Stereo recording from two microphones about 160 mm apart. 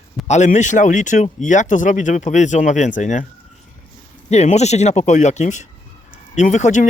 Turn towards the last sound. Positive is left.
turn(degrees=50)  # may be behind; listen again after turning